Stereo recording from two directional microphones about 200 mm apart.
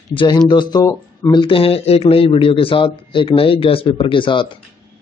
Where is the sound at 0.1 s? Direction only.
25° left (ahead or behind).